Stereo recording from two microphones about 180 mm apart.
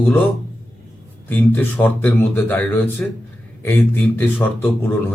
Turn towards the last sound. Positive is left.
turn(degrees=10)  # may be behind; listen again after turning